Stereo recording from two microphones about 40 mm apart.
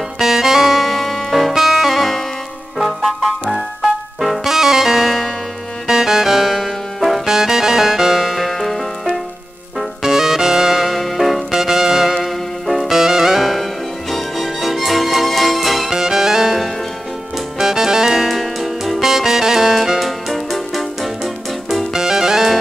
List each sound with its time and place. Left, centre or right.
0.2 s music: centre
10.0 s music: centre
11.5 s music: centre
12.2 s music: centre
12.9 s music: centre
15.9 s music: centre
17.6 s music: centre
18.3 s music: centre
20.1 s music: centre